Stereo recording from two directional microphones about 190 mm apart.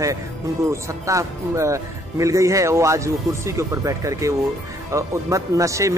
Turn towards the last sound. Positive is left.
turn(degrees=-15)  # may be behind; listen again after turning